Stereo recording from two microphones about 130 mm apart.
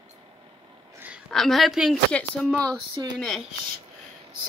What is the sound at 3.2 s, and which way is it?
Speech, centre (ahead or behind).